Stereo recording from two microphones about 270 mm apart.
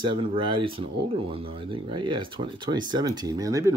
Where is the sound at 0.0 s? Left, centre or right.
Centre.